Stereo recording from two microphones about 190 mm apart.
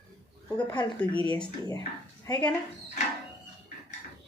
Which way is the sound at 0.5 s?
25° left (ahead or behind).